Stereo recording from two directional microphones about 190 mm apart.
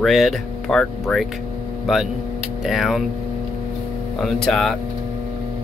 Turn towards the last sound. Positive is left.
turn(degrees=5)  # may be behind; listen again after turning